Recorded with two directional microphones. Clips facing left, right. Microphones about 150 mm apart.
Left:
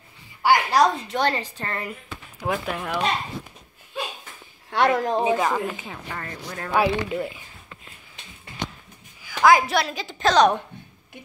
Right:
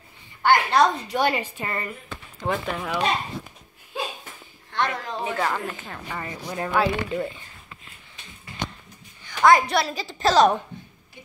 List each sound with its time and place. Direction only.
0.4 s speech: 5° left (ahead or behind)
1.1 s speech: 10° right (ahead or behind)
2.4 s a woman's voice: 5° left (ahead or behind)
4.6 s speech: 50° left (ahead or behind)
5.2 s speech: 15° left (ahead or behind)
5.7 s a woman's voice: 5° left (ahead or behind)
6.1 s speech: 15° right (ahead or behind)
6.7 s speech: 15° left (ahead or behind)
9.2 s a woman's voice: centre (ahead or behind)